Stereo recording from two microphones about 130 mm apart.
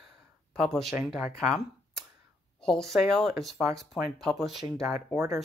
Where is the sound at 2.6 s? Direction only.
5° left (ahead or behind).